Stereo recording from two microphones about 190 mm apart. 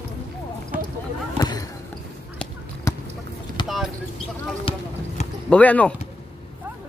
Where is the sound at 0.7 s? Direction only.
10° right (ahead or behind).